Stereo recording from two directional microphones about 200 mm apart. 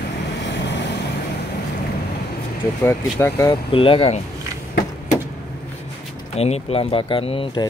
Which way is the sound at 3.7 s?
25° left (ahead or behind).